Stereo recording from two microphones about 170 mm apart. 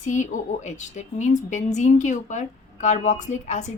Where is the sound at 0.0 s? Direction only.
45° left (ahead or behind).